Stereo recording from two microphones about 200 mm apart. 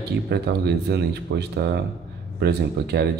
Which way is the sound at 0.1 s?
55° right (ahead or behind).